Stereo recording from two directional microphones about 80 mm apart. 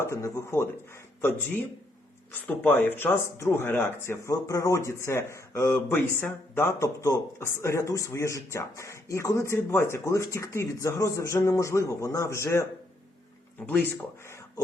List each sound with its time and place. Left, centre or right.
0.0 s a man's voice: left